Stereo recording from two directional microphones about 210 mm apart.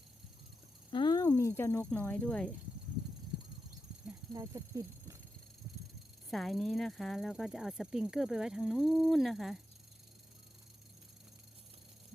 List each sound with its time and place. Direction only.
0.9 s speech: 20° left (ahead or behind); by 2.5 s 5° left (ahead or behind)
4.3 s speech: 15° right (ahead or behind)
6.3 s speech: centre (ahead or behind)